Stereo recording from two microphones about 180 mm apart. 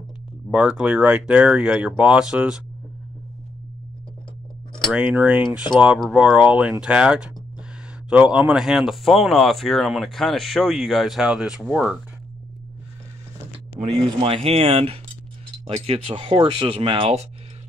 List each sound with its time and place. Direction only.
0.5 s speech: 5° right (ahead or behind)
4.7 s speech: centre (ahead or behind)
13.8 s speech: 30° right (ahead or behind)